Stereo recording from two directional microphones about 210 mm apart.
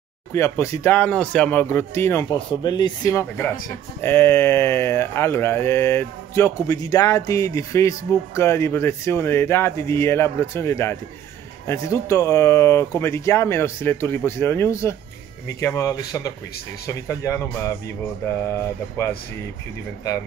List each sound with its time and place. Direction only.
0.3 s speech: 15° left (ahead or behind)